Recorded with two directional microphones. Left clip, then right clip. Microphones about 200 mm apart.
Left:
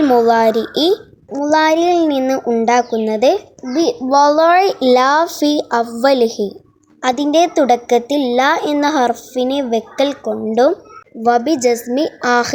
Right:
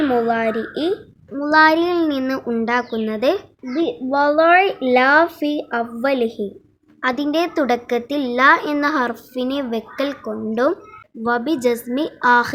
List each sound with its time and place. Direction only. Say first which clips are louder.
0.2 s speech: left 7 dB; 35° left (ahead or behind)
1.3 s a woman's voice: left 1 dB; 15° left (ahead or behind)
4.2 s speech: left 3 dB; 30° left (ahead or behind)
6.2 s a woman's voice: left 6 dB; centre (ahead or behind)
7.0 s a woman's voice: left 6 dB; 20° left (ahead or behind)